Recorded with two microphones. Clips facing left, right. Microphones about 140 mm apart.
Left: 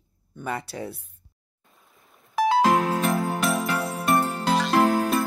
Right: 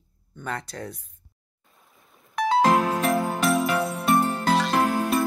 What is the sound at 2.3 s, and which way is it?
Music, 5° left (ahead or behind).